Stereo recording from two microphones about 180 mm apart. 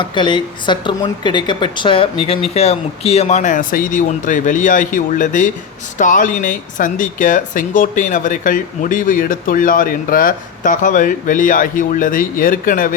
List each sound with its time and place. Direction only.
0.0 s a woman's voice: 25° left (ahead or behind); by 12.9 s 50° left (ahead or behind)